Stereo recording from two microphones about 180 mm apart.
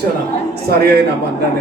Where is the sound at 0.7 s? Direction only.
60° right (ahead or behind).